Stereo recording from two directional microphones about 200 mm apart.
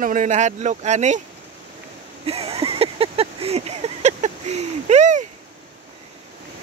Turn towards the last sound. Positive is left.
turn(degrees=-35)  # may be behind; listen again after turning